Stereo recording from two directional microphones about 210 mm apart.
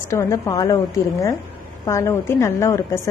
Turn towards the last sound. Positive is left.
turn(degrees=15)  # may be behind; listen again after turning